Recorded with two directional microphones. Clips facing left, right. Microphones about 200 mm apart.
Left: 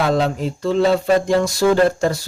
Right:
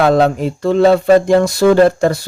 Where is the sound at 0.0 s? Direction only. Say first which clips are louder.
Right 6 dB; 60° right (ahead or behind).